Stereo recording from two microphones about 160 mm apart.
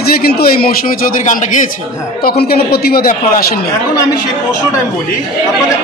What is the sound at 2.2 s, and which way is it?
A man's voice, 80° left.